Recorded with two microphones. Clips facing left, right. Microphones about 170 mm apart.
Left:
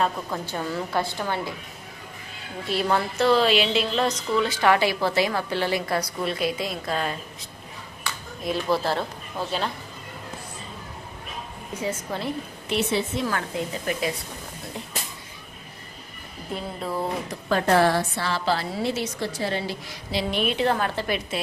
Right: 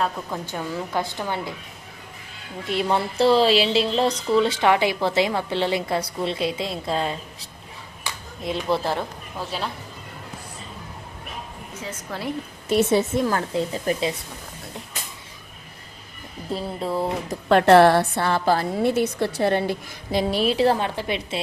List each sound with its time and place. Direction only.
0.7 s a woman's voice: 15° right (ahead or behind)
2.6 s speech: 20° right (ahead or behind)
3.2 s speech: 30° right (ahead or behind)
9.5 s a woman's voice: 5° right (ahead or behind)
12.1 s a woman's voice: 5° left (ahead or behind)
12.6 s speech: 45° right (ahead or behind)
13.5 s speech: 30° right (ahead or behind)
16.5 s speech: 30° right (ahead or behind)
17.5 s a woman's voice: 70° right (ahead or behind); by 20.4 s 50° right (ahead or behind)
20.4 s a woman's voice: 35° right (ahead or behind)
20.8 s a woman's voice: 15° right (ahead or behind)
21.1 s speech: 25° right (ahead or behind)